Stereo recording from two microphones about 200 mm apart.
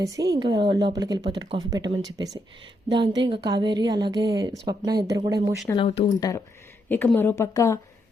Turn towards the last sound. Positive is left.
turn(degrees=15)  # may be behind; listen again after turning